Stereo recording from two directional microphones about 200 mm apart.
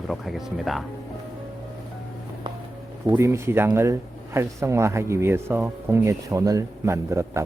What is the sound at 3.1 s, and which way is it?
Speech, 15° right (ahead or behind).